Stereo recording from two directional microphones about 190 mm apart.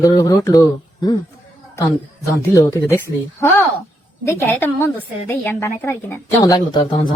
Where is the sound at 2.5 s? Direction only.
15° left (ahead or behind).